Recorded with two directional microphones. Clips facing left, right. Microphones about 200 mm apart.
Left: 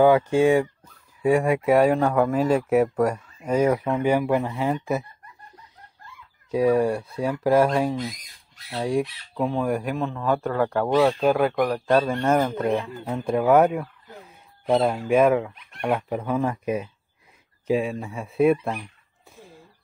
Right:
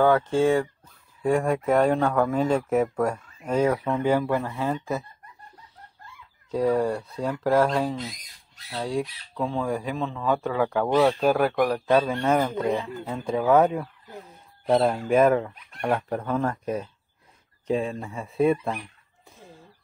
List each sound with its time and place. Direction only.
0.0 s speech: 15° left (ahead or behind)
6.5 s speech: 15° left (ahead or behind)